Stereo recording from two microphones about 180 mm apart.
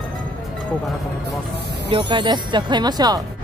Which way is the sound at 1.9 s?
25° right (ahead or behind).